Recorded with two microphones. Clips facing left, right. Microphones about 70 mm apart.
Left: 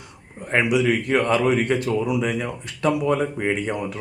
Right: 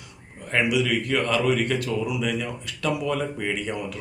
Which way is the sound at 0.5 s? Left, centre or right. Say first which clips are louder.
Left 3 dB; left.